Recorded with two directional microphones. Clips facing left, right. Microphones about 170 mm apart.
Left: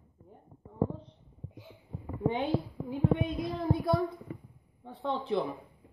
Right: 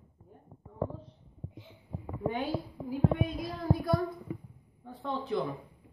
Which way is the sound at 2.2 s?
25° left (ahead or behind).